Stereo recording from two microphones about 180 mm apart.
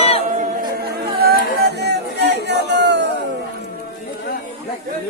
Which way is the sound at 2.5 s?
70° right (ahead or behind).